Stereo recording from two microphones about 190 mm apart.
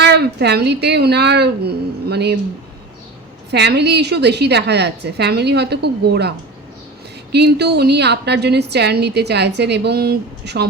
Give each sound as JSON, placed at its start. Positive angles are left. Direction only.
{"t": 0.0, "sound": "a woman's voice", "side_deg": -60}
{"t": 3.5, "sound": "a woman's voice", "side_deg": -60}
{"t": 7.3, "sound": "a woman's voice", "side_deg": -60}